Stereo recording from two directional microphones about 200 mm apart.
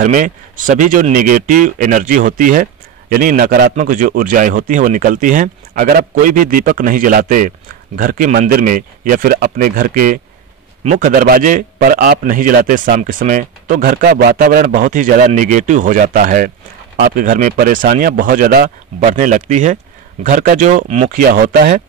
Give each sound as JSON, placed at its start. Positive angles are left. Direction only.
{"t": 0.0, "sound": "speech", "side_deg": -40}